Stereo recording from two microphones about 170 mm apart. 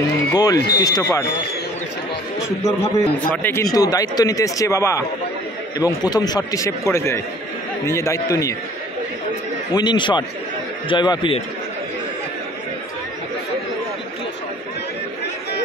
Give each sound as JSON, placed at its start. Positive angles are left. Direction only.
{"t": 0.3, "sound": "speech", "side_deg": 20}
{"t": 2.6, "sound": "a man's voice", "side_deg": 10}
{"t": 9.8, "sound": "speech", "side_deg": 25}